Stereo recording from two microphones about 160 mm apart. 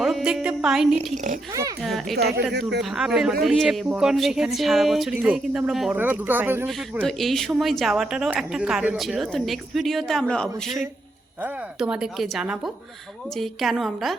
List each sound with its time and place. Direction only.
0.0 s music: centre (ahead or behind)
0.9 s speech: 50° right (ahead or behind)
1.8 s a woman's voice: centre (ahead or behind)
2.1 s speech: 90° right
2.8 s a woman's voice: 5° right (ahead or behind)
7.0 s a woman's voice: centre (ahead or behind)